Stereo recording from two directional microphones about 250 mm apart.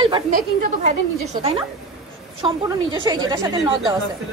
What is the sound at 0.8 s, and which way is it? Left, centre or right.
A woman's voice, right.